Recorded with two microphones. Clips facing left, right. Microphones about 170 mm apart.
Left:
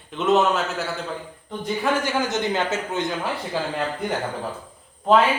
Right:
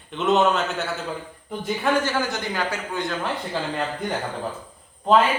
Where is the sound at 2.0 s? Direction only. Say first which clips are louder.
Left 2 dB; 20° left (ahead or behind).